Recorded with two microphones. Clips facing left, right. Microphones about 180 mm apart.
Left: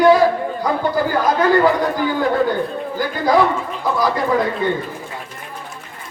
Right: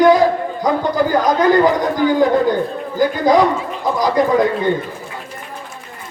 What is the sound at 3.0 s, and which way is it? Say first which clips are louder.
A man's voice: right 3 dB; 20° right (ahead or behind).